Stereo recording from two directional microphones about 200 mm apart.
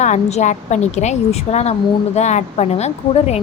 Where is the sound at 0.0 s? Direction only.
35° left (ahead or behind).